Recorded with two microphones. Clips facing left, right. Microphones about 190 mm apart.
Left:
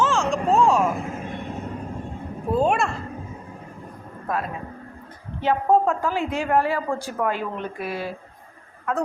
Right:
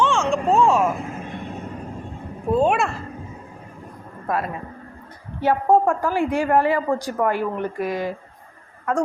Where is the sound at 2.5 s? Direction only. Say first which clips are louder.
Right 2 dB; centre (ahead or behind).